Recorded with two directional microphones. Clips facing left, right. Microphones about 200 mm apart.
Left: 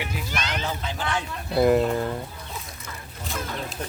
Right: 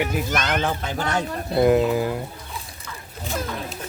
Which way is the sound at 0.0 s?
45° right (ahead or behind).